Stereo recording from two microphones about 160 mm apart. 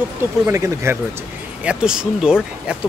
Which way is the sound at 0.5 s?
15° right (ahead or behind).